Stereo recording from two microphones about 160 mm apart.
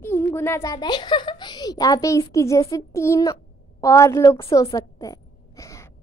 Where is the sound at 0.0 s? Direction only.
15° left (ahead or behind).